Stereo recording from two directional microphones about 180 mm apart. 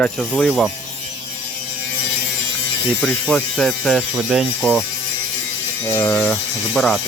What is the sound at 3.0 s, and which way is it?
Speech, 5° left (ahead or behind).